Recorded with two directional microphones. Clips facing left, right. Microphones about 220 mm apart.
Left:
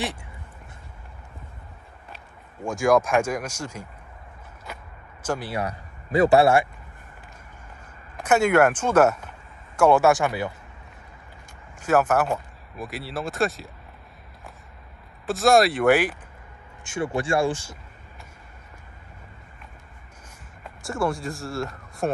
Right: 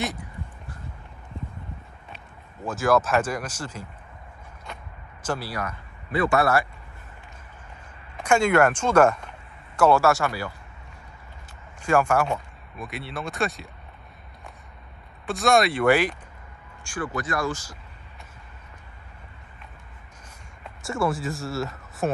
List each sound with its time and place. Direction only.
0.0 s a sound: 30° left (ahead or behind)
2.6 s speech: 15° left (ahead or behind)
4.7 s a sound: 5° left (ahead or behind)
5.2 s speech: 10° left (ahead or behind)
5.5 s speech: 35° left (ahead or behind)
8.2 s speech: 10° left (ahead or behind)
11.8 s speech: 5° left (ahead or behind)
15.2 s speech: centre (ahead or behind)
16.8 s speech: 25° left (ahead or behind)
20.6 s speech: centre (ahead or behind)